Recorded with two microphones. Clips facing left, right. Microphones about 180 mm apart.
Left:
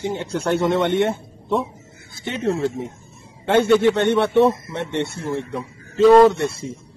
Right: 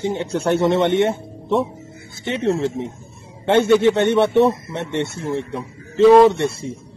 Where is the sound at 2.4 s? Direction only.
25° right (ahead or behind).